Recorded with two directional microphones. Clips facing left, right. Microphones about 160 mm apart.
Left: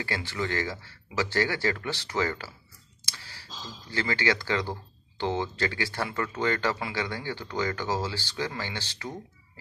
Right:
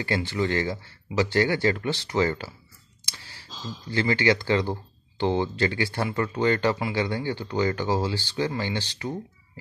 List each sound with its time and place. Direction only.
0.0 s speech: 20° right (ahead or behind)
3.9 s speech: 20° right (ahead or behind)